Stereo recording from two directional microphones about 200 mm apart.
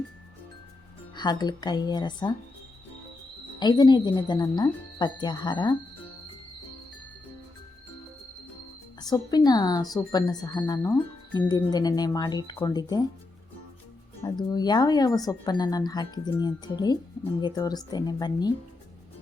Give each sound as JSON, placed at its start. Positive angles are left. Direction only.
{"t": 1.1, "sound": "speech", "side_deg": 20}
{"t": 3.6, "sound": "speech", "side_deg": 20}
{"t": 9.0, "sound": "speech", "side_deg": 20}
{"t": 14.2, "sound": "speech", "side_deg": 15}